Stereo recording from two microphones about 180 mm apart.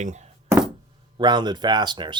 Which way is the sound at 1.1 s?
25° right (ahead or behind).